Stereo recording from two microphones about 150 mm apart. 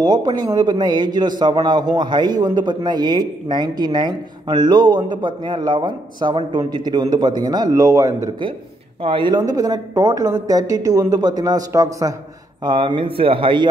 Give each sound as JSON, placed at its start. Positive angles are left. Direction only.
{"t": 0.0, "sound": "a man's voice", "side_deg": -25}
{"t": 9.0, "sound": "a man's voice", "side_deg": -35}
{"t": 12.6, "sound": "speech", "side_deg": -35}